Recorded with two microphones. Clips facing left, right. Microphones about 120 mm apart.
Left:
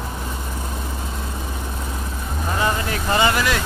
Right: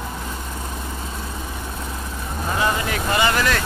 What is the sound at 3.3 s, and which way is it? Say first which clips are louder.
Vehicle: even; 15° left (ahead or behind).